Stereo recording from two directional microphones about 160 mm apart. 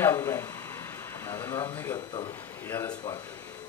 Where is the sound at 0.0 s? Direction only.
20° left (ahead or behind).